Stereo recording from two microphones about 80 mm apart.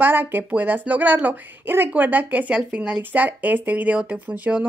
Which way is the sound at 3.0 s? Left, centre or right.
Right.